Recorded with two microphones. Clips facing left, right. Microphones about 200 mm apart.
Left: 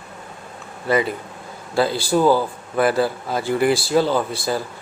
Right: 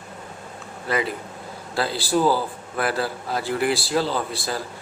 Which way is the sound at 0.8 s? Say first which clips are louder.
Left 5 dB; centre (ahead or behind).